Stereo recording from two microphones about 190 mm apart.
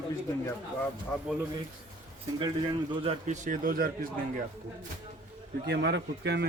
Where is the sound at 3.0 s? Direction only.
40° right (ahead or behind).